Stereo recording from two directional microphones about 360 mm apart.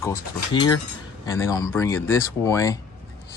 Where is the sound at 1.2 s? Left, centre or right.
Centre.